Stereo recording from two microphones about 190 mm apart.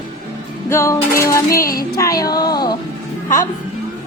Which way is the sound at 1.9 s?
20° left (ahead or behind).